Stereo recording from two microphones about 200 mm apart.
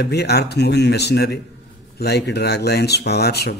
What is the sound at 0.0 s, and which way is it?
Speech, 55° left (ahead or behind).